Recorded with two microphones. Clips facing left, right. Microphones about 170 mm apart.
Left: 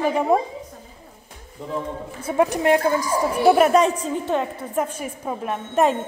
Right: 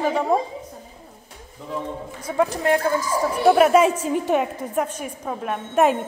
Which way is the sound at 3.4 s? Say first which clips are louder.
Right 1 dB; centre (ahead or behind).